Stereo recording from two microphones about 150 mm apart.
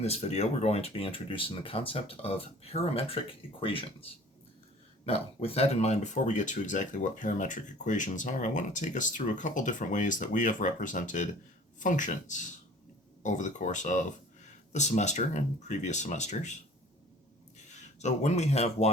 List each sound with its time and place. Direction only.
0.0 s speech: 45° left (ahead or behind)
17.7 s speech: 50° left (ahead or behind)